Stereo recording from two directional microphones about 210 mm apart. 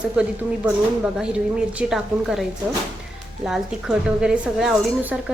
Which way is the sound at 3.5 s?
5° right (ahead or behind).